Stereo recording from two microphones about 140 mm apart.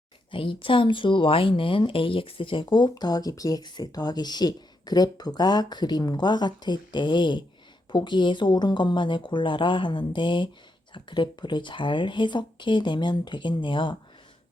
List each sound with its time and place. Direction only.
0.3 s speech: 40° left (ahead or behind)